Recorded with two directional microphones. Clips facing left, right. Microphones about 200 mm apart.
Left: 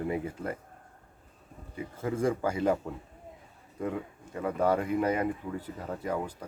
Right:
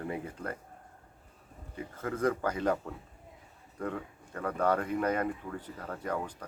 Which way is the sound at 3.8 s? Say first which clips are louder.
Left 3 dB; 15° left (ahead or behind).